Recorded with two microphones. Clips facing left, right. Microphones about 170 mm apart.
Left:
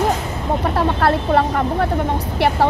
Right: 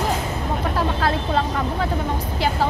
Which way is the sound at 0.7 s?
60° left (ahead or behind).